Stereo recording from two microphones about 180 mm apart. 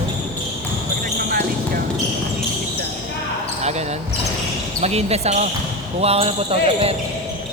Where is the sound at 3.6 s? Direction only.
35° right (ahead or behind).